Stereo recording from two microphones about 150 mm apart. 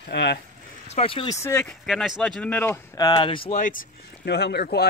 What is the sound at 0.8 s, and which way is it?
Speech, 40° left (ahead or behind).